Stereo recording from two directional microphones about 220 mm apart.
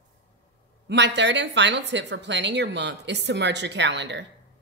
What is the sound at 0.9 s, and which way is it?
A woman's voice, 50° right (ahead or behind).